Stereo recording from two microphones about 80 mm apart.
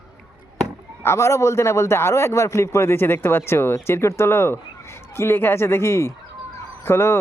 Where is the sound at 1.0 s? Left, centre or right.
Left.